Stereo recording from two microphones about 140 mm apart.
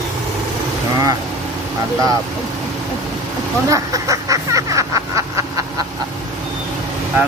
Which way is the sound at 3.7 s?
25° right (ahead or behind).